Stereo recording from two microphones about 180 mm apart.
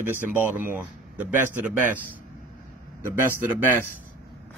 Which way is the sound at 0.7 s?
10° right (ahead or behind).